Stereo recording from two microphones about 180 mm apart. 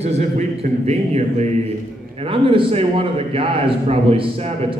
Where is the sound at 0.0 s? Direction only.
35° right (ahead or behind).